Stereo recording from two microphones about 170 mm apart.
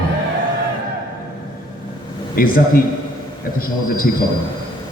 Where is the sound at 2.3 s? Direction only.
60° left (ahead or behind).